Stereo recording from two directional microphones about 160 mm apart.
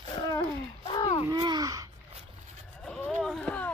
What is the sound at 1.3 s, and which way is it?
Speech, 25° right (ahead or behind).